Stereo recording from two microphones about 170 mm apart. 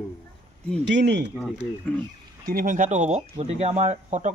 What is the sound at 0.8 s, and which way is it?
Speech, 90° right.